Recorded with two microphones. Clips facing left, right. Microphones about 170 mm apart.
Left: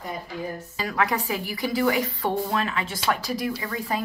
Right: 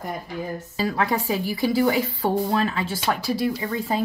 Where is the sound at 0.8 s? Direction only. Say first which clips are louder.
Right 2 dB; 30° right (ahead or behind).